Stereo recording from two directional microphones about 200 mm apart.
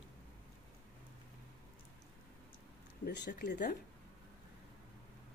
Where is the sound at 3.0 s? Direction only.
55° left (ahead or behind).